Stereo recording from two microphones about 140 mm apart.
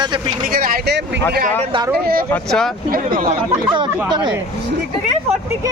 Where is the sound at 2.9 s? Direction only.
90° right.